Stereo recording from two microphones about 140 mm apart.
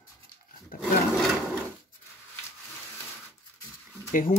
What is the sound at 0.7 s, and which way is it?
Roar, 90° left.